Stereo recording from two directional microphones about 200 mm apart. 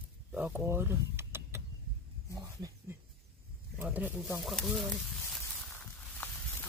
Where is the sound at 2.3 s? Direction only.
20° right (ahead or behind).